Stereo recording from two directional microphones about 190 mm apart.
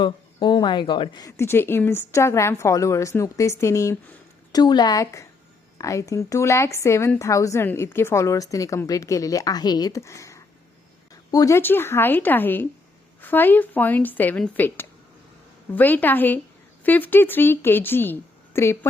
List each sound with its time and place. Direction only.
0.0 s speech: 25° left (ahead or behind)